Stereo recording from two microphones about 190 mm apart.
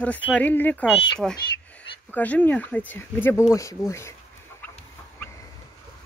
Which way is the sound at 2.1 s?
10° left (ahead or behind).